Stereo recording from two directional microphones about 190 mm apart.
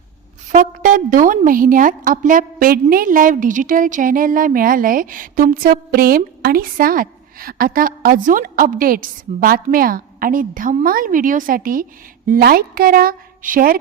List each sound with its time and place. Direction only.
0.5 s a woman's voice: 45° right (ahead or behind)